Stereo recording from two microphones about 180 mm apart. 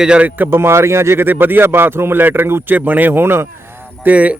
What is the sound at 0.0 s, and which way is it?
Speech, 5° right (ahead or behind).